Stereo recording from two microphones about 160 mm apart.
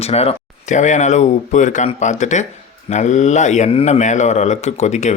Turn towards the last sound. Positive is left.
turn(degrees=45)  # may be behind; listen again after turning